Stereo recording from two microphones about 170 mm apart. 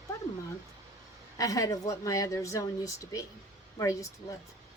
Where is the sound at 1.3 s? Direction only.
20° left (ahead or behind).